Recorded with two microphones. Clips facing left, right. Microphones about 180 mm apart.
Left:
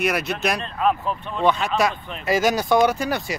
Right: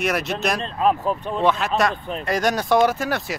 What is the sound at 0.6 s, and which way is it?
Speech, 35° right (ahead or behind).